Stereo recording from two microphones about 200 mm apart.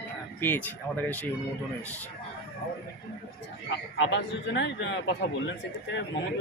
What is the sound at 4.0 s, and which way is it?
A man's voice, 65° left (ahead or behind).